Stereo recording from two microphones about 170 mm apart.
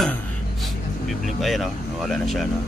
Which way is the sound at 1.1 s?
Centre (ahead or behind).